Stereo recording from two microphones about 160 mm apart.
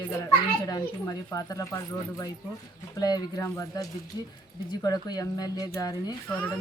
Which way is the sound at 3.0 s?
25° left (ahead or behind).